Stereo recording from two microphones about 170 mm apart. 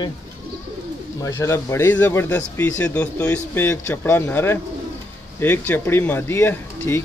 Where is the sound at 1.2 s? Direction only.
15° left (ahead or behind).